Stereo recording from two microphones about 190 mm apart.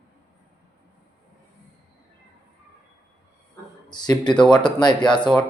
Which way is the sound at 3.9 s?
20° left (ahead or behind).